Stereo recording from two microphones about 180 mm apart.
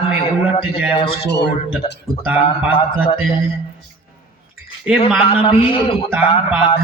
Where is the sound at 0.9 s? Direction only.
30° left (ahead or behind).